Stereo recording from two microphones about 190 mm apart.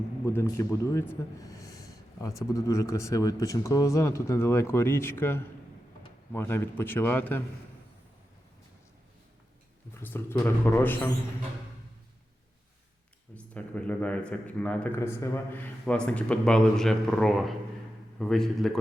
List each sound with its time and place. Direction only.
0.3 s a man's voice: 15° left (ahead or behind)
10.0 s a man's voice: 10° left (ahead or behind)
13.3 s a man's voice: 5° left (ahead or behind)